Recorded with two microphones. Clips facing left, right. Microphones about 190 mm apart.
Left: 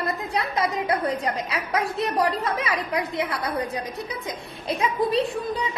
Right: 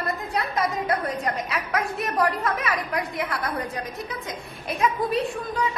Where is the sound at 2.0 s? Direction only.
25° left (ahead or behind).